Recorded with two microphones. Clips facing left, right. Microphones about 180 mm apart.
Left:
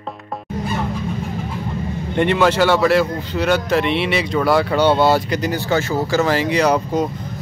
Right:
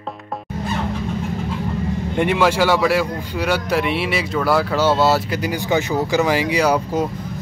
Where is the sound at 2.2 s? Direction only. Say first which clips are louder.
Left 2 dB; 10° right (ahead or behind).